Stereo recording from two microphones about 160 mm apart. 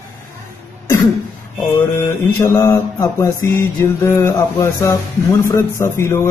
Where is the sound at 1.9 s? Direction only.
20° left (ahead or behind).